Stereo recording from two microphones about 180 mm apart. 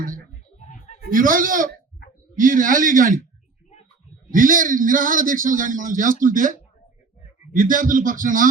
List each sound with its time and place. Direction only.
1.1 s a man's voice: 50° right (ahead or behind)
4.3 s a man's voice: 50° right (ahead or behind)